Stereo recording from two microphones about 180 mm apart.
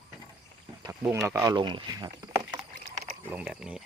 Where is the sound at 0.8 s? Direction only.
15° right (ahead or behind).